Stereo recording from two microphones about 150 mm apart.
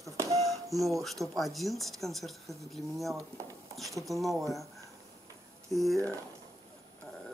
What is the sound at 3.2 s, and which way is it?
Speech, 20° right (ahead or behind).